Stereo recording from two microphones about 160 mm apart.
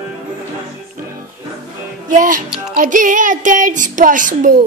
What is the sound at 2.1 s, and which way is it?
Speech, 55° right (ahead or behind).